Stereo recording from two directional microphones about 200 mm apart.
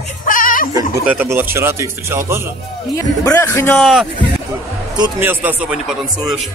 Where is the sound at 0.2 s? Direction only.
40° left (ahead or behind).